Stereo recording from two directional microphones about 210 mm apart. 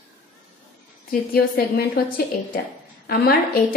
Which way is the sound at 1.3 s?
45° left (ahead or behind).